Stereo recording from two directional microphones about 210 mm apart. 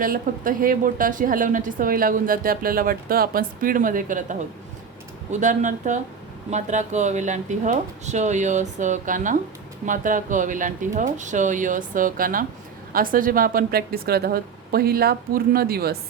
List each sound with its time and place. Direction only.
0.0 s a woman's voice: 40° right (ahead or behind)